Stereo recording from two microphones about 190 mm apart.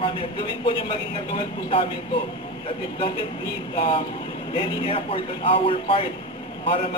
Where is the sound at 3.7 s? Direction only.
30° left (ahead or behind).